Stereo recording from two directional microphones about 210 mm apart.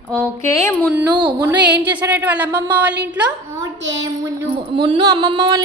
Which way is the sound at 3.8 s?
60° right (ahead or behind).